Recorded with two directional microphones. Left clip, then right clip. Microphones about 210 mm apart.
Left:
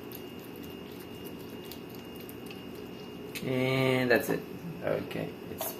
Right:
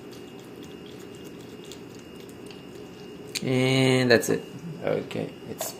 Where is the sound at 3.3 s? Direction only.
50° right (ahead or behind).